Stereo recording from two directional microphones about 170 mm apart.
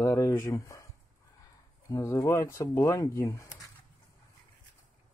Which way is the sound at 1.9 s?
20° left (ahead or behind).